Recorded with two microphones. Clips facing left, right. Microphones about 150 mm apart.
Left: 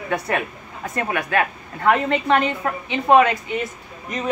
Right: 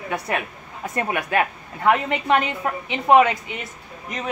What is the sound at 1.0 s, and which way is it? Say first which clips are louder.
Speech: even; 15° right (ahead or behind).